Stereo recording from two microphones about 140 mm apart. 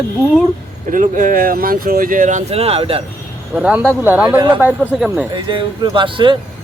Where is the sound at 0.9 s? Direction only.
70° right (ahead or behind).